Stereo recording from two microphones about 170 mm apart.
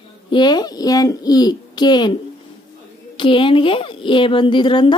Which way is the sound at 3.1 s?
30° left (ahead or behind).